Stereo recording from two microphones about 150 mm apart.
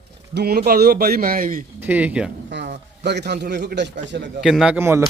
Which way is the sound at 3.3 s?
90° right.